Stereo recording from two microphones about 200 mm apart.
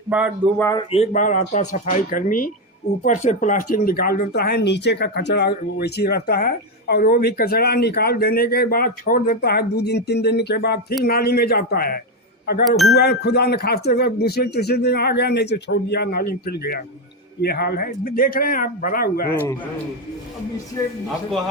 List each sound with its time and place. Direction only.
0.6 s speech: 20° left (ahead or behind)
0.9 s speech: 35° left (ahead or behind)